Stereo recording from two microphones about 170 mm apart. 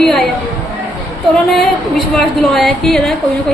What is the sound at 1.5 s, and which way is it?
A woman's voice, centre (ahead or behind).